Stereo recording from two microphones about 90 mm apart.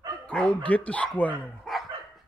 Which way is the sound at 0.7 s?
15° left (ahead or behind).